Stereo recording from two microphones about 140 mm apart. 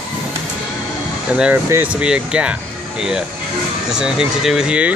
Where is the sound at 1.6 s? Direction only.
15° right (ahead or behind).